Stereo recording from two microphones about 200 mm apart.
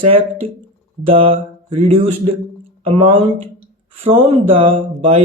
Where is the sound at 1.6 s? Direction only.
25° right (ahead or behind).